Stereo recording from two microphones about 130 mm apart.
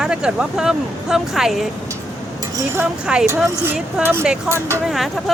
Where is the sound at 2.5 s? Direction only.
15° right (ahead or behind).